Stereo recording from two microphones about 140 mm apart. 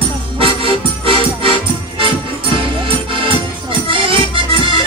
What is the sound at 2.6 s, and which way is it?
Music, 35° right (ahead or behind).